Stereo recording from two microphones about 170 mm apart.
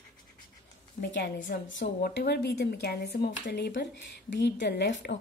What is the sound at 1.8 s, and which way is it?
Speech, 70° left (ahead or behind).